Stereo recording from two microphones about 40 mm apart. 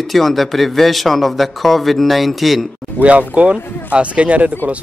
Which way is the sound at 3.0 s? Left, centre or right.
Left.